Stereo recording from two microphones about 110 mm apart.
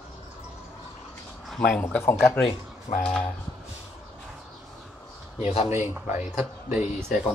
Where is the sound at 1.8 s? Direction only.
20° left (ahead or behind).